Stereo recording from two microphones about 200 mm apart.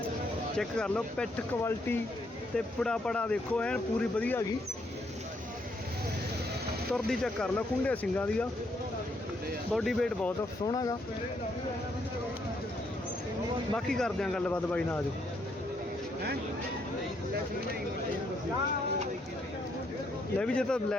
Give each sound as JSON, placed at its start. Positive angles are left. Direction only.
{"t": 0.5, "sound": "speech", "side_deg": 5}
{"t": 6.9, "sound": "speech", "side_deg": 0}
{"t": 9.7, "sound": "speech", "side_deg": 0}
{"t": 10.7, "sound": "speech", "side_deg": 20}
{"t": 13.7, "sound": "speech", "side_deg": 0}
{"t": 20.4, "sound": "speech", "side_deg": 5}